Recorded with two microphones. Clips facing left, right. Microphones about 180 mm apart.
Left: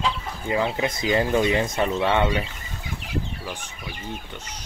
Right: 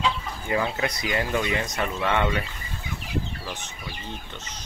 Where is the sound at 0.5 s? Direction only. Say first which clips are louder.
Left 2 dB; 25° left (ahead or behind).